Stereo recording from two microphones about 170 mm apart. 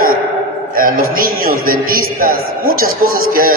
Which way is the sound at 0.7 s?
55° right (ahead or behind).